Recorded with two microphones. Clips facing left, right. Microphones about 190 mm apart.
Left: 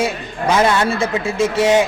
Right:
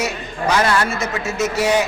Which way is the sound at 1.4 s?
25° left (ahead or behind).